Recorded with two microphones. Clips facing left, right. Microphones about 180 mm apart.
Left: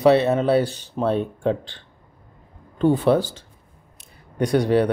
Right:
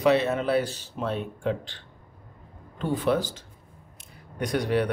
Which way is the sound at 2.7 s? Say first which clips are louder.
Left 7 dB; 30° left (ahead or behind).